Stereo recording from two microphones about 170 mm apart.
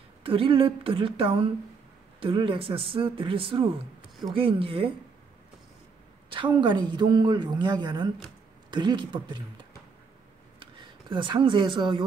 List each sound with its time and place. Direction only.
0.2 s a man's voice: 30° right (ahead or behind)
6.3 s a woman's voice: 30° right (ahead or behind)
11.1 s a woman's voice: 30° right (ahead or behind)